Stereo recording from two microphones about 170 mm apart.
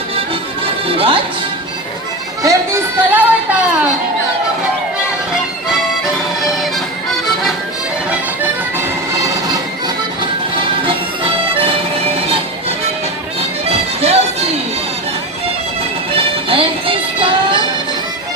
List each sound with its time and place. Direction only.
0.6 s music: 30° right (ahead or behind)
2.4 s music: 15° right (ahead or behind)
6.4 s music: centre (ahead or behind)
11.6 s music: 35° right (ahead or behind)
16.1 s music: 30° right (ahead or behind)